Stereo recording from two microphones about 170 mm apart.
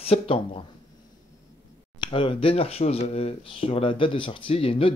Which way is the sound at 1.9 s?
30° left (ahead or behind).